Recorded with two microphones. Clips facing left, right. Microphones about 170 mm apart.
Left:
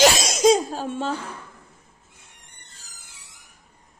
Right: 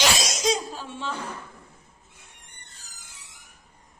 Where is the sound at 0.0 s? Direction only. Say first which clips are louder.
Left 8 dB; 50° left (ahead or behind).